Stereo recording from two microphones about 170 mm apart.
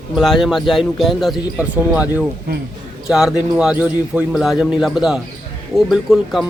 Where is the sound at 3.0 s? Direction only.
5° right (ahead or behind).